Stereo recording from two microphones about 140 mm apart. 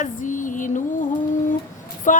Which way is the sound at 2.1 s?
65° left (ahead or behind).